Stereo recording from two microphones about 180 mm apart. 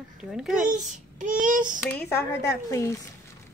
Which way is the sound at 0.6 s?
45° right (ahead or behind).